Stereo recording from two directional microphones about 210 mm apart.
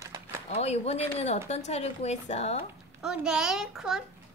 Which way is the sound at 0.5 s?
30° left (ahead or behind).